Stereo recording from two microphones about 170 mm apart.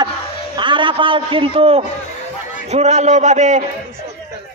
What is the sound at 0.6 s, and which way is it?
A man's voice, 30° right (ahead or behind).